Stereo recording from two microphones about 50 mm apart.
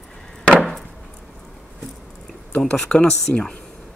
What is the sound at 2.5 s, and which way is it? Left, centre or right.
Speech, centre.